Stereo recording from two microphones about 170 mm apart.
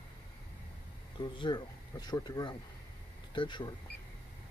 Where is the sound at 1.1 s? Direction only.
25° left (ahead or behind).